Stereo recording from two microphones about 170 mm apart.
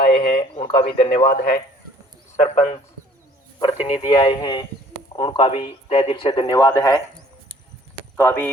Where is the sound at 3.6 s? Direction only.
25° left (ahead or behind).